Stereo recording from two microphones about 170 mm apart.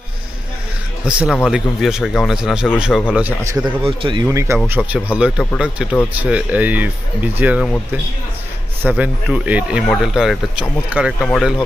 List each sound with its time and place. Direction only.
1.0 s speech: 5° right (ahead or behind)
3.8 s speech: 30° right (ahead or behind)
4.3 s speech: 15° right (ahead or behind)
8.8 s speech: 10° right (ahead or behind)